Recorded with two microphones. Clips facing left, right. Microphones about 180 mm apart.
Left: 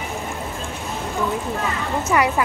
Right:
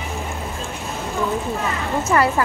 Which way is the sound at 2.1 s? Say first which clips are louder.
Right 1 dB; 10° left (ahead or behind).